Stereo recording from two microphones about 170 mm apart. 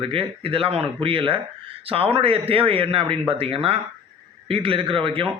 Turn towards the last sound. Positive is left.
turn(degrees=-30)  # may be behind; listen again after turning